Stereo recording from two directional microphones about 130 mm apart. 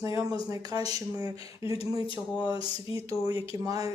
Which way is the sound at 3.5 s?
25° right (ahead or behind).